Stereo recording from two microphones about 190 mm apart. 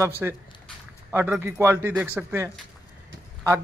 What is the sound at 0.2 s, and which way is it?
Speech, 10° right (ahead or behind).